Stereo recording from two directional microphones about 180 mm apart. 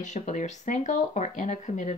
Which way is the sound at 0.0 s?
40° left (ahead or behind).